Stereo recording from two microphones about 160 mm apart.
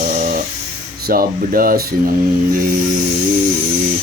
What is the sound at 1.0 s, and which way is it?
Speech, 65° right (ahead or behind).